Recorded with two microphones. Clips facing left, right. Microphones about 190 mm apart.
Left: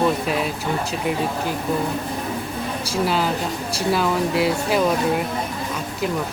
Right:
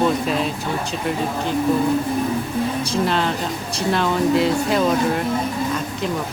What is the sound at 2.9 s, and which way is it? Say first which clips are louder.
Speech: right 1 dB; 5° left (ahead or behind).